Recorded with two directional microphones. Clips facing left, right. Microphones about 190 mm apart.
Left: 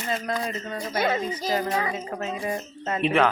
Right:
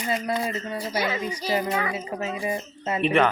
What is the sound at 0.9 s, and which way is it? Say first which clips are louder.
Speech: left 3 dB; 50° left (ahead or behind).